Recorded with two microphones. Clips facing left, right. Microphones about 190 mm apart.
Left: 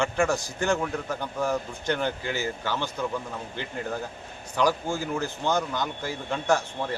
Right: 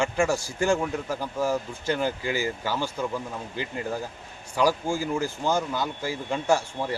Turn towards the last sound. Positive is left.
turn(degrees=-10)  # may be behind; listen again after turning